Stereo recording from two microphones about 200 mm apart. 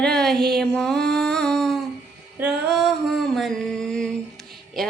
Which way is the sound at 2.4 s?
Centre (ahead or behind).